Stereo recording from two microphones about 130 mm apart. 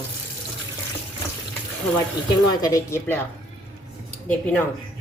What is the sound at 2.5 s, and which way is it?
Speech, 25° left (ahead or behind).